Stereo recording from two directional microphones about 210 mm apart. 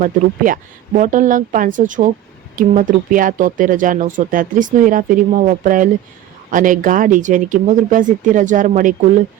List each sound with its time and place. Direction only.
0.0 s speech: 40° right (ahead or behind)